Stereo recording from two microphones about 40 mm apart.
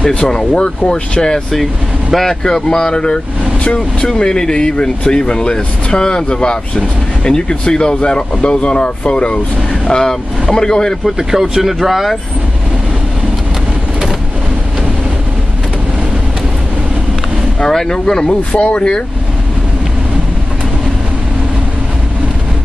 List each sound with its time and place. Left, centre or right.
0.1 s speech: left
2.4 s speech: centre
4.1 s speech: centre
9.8 s speech: centre
11.1 s speech: centre
17.6 s speech: centre; by 19.0 s left